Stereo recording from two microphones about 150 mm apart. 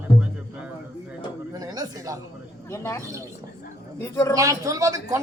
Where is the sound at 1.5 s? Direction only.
25° right (ahead or behind).